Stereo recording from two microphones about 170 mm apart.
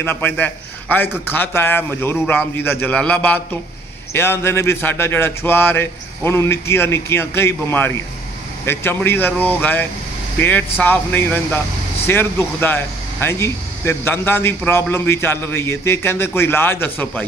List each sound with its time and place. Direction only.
0.0 s speech: 10° left (ahead or behind)